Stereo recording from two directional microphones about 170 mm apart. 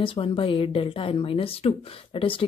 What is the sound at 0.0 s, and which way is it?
Speech, 30° left (ahead or behind).